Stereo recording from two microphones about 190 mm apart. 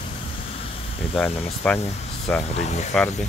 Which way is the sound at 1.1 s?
5° left (ahead or behind).